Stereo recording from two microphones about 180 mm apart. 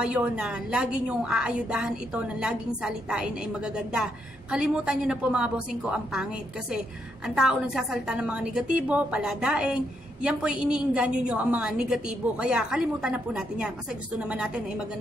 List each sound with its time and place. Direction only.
0.0 s a woman's voice: 5° right (ahead or behind)
7.2 s a woman's voice: centre (ahead or behind)